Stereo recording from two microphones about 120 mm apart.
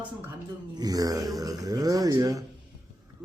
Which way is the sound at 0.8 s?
30° right (ahead or behind).